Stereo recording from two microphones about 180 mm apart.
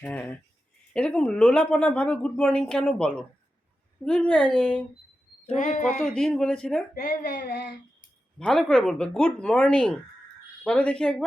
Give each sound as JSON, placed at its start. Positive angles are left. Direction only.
{"t": 0.0, "sound": "speech", "side_deg": 10}
{"t": 5.5, "sound": "speech", "side_deg": 50}
{"t": 6.0, "sound": "speech", "side_deg": 0}
{"t": 7.3, "sound": "child singing", "side_deg": 70}
{"t": 8.4, "sound": "speech", "side_deg": 5}